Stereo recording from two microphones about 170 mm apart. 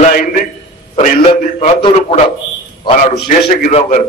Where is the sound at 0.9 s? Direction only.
45° left (ahead or behind).